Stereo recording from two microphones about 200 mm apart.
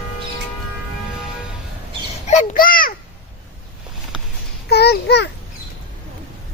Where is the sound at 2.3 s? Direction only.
40° left (ahead or behind).